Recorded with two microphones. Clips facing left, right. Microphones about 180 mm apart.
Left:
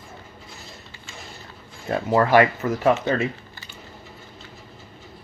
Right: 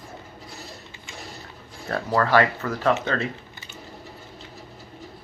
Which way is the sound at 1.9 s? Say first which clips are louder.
Left 3 dB; 15° left (ahead or behind).